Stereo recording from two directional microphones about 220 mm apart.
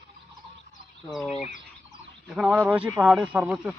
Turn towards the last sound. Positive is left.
turn(degrees=0)  # may be behind; listen again after turning